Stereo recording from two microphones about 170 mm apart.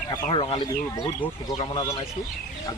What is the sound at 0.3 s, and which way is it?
Speech, 30° left (ahead or behind).